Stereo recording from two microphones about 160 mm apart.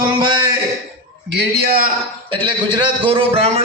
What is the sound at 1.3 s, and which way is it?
Speech, 80° right.